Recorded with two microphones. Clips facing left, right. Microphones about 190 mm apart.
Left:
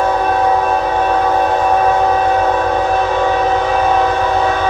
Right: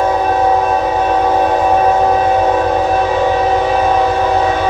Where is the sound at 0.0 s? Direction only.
10° right (ahead or behind).